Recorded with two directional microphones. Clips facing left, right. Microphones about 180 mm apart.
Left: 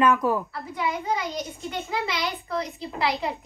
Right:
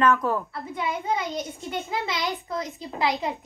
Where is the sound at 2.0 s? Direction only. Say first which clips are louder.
Even; 20° right (ahead or behind).